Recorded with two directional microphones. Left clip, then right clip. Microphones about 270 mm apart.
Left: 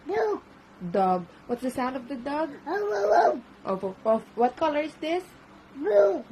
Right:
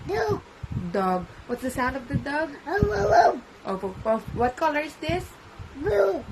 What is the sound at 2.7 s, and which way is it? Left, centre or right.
Speech, centre.